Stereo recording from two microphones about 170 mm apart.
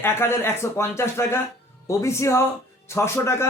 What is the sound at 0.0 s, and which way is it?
A man's voice, 15° left (ahead or behind).